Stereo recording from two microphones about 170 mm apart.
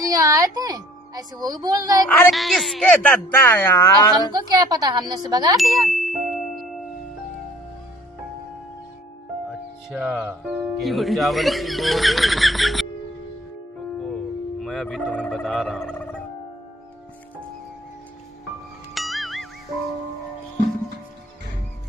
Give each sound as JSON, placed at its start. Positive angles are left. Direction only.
{"t": 0.0, "sound": "speech", "side_deg": -20}
{"t": 2.0, "sound": "speech", "side_deg": 5}
{"t": 4.3, "sound": "speech", "side_deg": -25}
{"t": 5.8, "sound": "ding", "side_deg": 0}
{"t": 9.5, "sound": "speech", "side_deg": -5}
{"t": 14.6, "sound": "speech", "side_deg": 5}
{"t": 18.9, "sound": "music", "side_deg": 0}